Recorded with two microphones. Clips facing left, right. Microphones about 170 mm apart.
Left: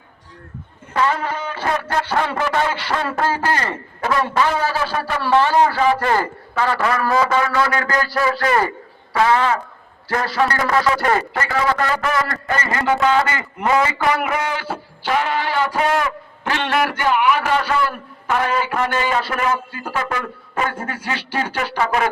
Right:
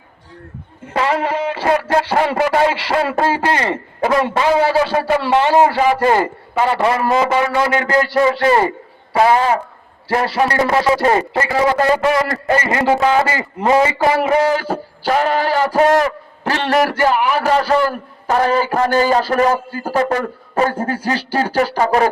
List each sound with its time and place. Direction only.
0.9 s a man's voice: 30° right (ahead or behind)